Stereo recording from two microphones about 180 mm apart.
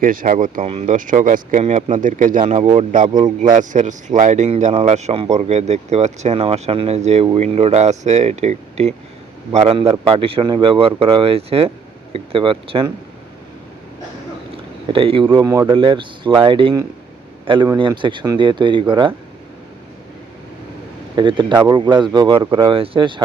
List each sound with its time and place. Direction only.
0.0 s speech: 50° right (ahead or behind); by 12.9 s 30° right (ahead or behind)
14.5 s a man's voice: 30° right (ahead or behind)
21.2 s speech: 25° right (ahead or behind)